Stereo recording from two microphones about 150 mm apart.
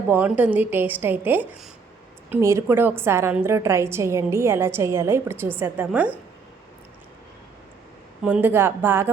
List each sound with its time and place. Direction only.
0.1 s a woman's voice: 10° right (ahead or behind)
8.2 s a woman's voice: 10° right (ahead or behind)